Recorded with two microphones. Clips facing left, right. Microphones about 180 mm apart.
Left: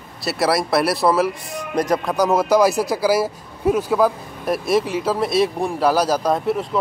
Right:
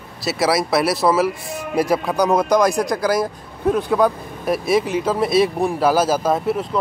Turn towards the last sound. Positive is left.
turn(degrees=0)  # may be behind; listen again after turning